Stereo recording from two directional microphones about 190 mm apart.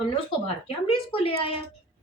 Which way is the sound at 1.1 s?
30° left (ahead or behind).